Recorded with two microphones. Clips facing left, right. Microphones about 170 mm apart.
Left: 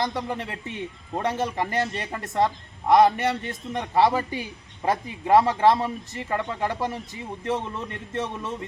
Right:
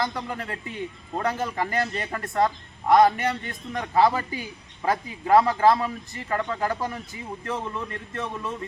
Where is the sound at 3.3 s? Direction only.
20° left (ahead or behind).